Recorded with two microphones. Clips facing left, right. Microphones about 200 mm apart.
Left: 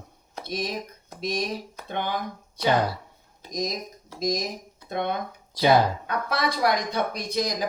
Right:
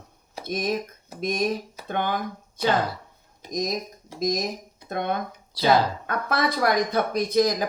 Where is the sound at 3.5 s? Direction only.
50° right (ahead or behind).